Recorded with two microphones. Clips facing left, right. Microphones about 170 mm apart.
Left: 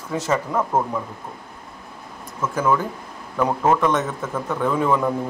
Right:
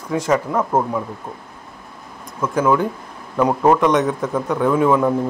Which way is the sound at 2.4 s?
15° right (ahead or behind).